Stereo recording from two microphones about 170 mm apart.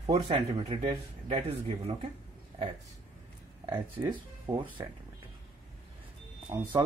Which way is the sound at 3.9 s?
25° right (ahead or behind).